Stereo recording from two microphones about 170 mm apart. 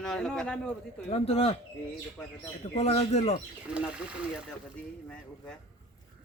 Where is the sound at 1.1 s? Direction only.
35° left (ahead or behind).